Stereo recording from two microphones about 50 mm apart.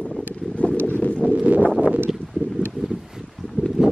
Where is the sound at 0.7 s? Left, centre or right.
Right.